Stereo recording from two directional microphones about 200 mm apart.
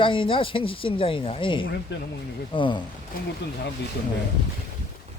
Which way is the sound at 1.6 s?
60° left (ahead or behind).